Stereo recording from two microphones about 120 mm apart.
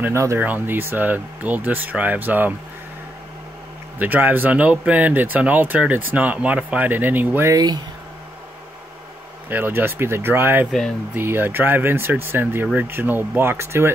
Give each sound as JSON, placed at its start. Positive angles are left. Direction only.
{"t": 0.0, "sound": "speech", "side_deg": -25}
{"t": 4.0, "sound": "speech", "side_deg": -15}
{"t": 7.5, "sound": "speech", "side_deg": -35}
{"t": 9.5, "sound": "speech", "side_deg": -15}